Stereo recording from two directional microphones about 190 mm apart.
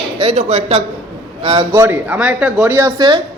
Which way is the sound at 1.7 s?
10° right (ahead or behind).